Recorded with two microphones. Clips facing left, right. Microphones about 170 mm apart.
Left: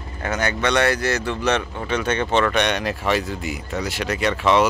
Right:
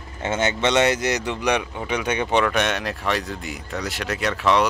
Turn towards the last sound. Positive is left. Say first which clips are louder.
# left 2 dB
turn(degrees=0)  # may be behind; listen again after turning